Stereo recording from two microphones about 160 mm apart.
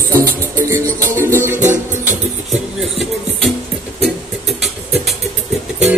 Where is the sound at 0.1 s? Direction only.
15° right (ahead or behind).